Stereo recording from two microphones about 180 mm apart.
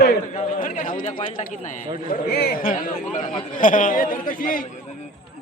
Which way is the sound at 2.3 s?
60° left (ahead or behind).